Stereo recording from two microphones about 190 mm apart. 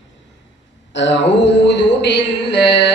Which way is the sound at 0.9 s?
70° left (ahead or behind).